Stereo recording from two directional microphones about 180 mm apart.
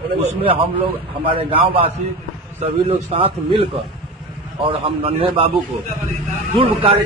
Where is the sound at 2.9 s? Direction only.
30° right (ahead or behind).